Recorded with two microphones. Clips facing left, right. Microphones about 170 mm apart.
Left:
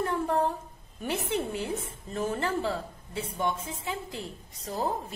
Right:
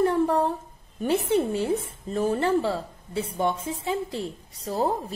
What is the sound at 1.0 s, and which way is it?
A woman's voice, 30° right (ahead or behind).